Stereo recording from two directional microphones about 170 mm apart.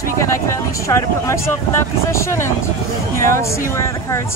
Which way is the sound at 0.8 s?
15° left (ahead or behind).